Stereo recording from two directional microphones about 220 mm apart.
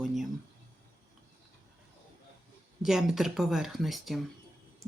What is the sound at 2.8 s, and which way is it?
Speech, centre (ahead or behind).